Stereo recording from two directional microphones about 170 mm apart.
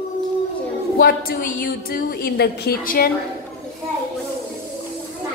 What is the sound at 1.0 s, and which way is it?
A woman's voice, 60° left (ahead or behind).